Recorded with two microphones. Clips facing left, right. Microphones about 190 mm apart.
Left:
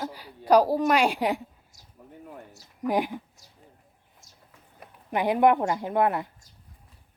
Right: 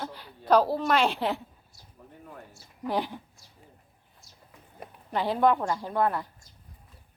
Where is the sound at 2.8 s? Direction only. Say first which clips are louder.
Left 4 dB; 15° left (ahead or behind).